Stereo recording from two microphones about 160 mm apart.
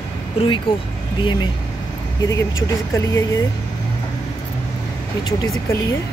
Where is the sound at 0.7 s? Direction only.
35° left (ahead or behind).